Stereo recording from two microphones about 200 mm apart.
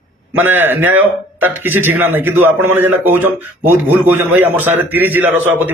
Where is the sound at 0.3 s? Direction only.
10° right (ahead or behind).